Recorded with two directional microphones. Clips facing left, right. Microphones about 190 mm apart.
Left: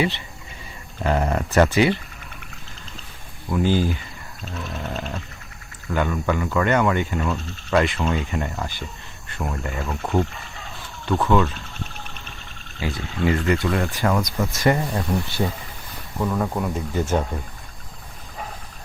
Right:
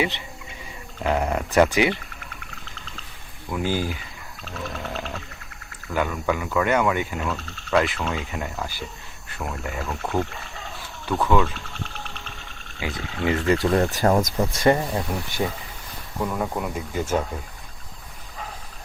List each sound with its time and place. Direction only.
1.0 s speech: 5° right (ahead or behind)
3.6 s speech: 10° right (ahead or behind)
4.8 s wild animals: centre (ahead or behind)
5.9 s speech: 5° right (ahead or behind)
11.2 s speech: 5° right (ahead or behind)
12.8 s speech: 20° right (ahead or behind)
13.6 s speech: 40° right (ahead or behind)
14.5 s speech: 30° right (ahead or behind)
14.9 s speech: 15° right (ahead or behind)